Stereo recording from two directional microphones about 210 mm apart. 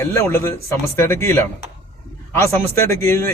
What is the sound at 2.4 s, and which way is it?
Speech, 15° left (ahead or behind).